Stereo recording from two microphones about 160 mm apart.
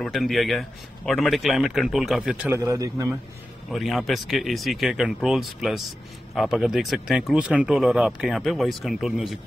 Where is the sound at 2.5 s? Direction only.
20° right (ahead or behind).